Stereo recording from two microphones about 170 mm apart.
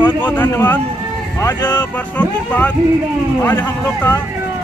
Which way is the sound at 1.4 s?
25° left (ahead or behind).